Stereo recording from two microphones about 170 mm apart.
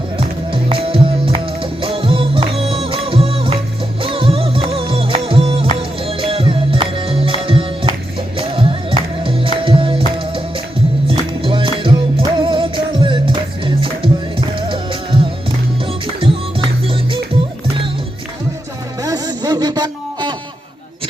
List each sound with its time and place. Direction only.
0.2 s music: 30° right (ahead or behind)
11.1 s music: 30° right (ahead or behind)
19.0 s music: 20° right (ahead or behind)